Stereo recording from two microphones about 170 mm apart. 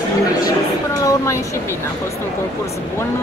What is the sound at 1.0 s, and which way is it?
Speech, 15° left (ahead or behind).